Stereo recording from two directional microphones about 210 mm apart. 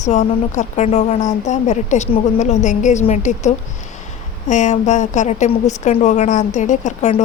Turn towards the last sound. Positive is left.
turn(degrees=35)  # may be behind; listen again after turning